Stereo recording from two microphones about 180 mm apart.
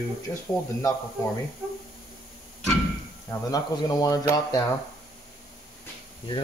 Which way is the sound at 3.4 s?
20° left (ahead or behind).